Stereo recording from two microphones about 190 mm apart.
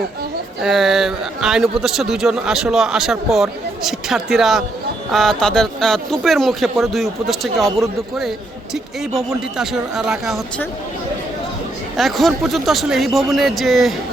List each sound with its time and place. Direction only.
0.6 s a man's voice: centre (ahead or behind)
9.6 s a man's voice: centre (ahead or behind)
11.9 s a man's voice: centre (ahead or behind)